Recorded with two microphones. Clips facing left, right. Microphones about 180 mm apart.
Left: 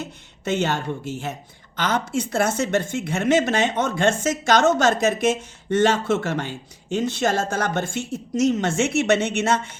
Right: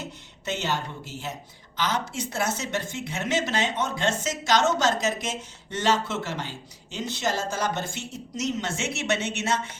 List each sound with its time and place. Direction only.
0.0 s speech: 55° left (ahead or behind)